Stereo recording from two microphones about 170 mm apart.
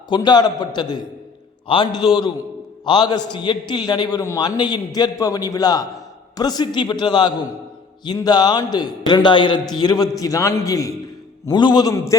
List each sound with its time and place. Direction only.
0.1 s a man's voice: 25° left (ahead or behind)